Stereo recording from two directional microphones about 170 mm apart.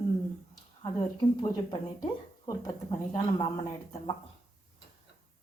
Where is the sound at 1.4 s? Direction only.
20° left (ahead or behind).